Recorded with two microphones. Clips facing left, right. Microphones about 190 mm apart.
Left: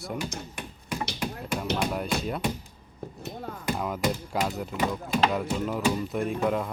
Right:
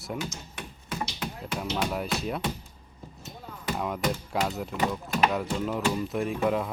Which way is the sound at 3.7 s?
Centre (ahead or behind).